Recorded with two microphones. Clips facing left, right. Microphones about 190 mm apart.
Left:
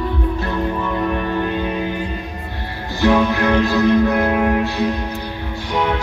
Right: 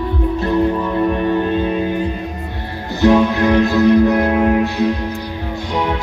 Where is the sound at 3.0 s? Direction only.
20° right (ahead or behind).